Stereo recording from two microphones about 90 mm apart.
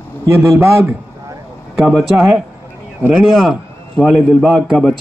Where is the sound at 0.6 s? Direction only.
25° right (ahead or behind).